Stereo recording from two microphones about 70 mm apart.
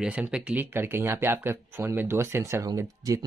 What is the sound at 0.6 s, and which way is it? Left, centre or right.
Speech, right.